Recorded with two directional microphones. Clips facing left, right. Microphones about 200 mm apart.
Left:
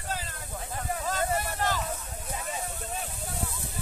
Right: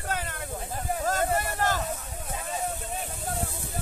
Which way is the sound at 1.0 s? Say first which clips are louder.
Right 3 dB; 45° right (ahead or behind).